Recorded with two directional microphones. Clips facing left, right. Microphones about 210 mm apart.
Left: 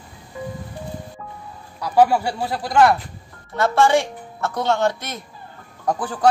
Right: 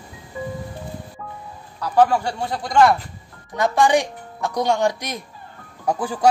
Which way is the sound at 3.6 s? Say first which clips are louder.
Left 1 dB; 15° right (ahead or behind).